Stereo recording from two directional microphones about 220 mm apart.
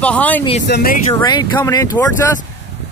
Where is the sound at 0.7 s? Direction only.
45° left (ahead or behind).